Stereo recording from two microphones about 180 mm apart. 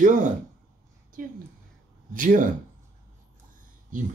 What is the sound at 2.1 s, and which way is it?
Speech, 50° right (ahead or behind).